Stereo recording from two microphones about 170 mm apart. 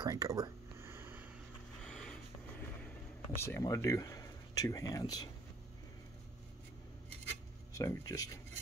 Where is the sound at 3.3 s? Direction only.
15° left (ahead or behind).